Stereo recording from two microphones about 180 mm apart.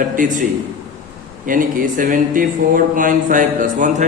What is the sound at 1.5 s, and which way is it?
Speech, 50° right (ahead or behind).